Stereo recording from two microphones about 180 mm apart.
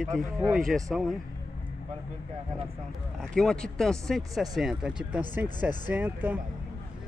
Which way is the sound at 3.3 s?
5° left (ahead or behind).